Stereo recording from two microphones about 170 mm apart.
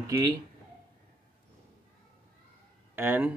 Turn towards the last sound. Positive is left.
turn(degrees=-10)  # may be behind; listen again after turning